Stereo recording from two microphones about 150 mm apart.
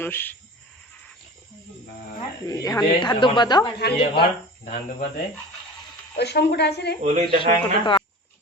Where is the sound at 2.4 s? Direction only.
25° left (ahead or behind).